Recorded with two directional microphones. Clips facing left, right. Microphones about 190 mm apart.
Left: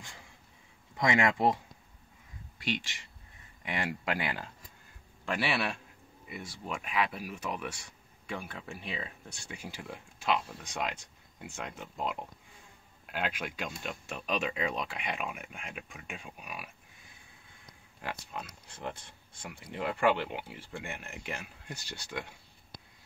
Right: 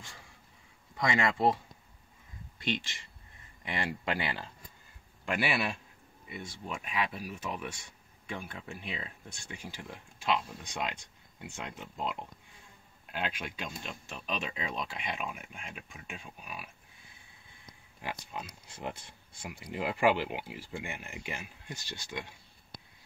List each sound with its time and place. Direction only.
0.9 s speech: 15° left (ahead or behind)
2.6 s speech: 10° left (ahead or behind)
5.2 s speech: 5° right (ahead or behind)
18.0 s speech: 5° right (ahead or behind)